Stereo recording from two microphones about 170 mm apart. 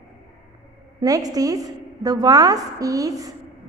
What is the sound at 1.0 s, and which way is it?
A woman's voice, 20° right (ahead or behind).